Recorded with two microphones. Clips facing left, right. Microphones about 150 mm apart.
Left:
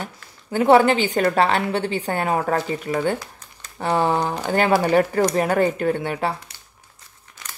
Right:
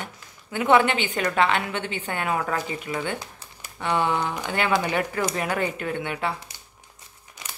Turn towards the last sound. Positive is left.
turn(degrees=40)  # may be behind; listen again after turning